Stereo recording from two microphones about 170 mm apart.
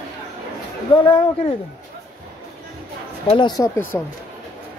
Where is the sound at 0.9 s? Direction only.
30° left (ahead or behind).